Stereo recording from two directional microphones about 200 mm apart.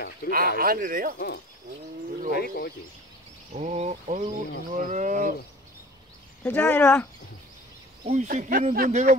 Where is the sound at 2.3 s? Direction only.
50° left (ahead or behind).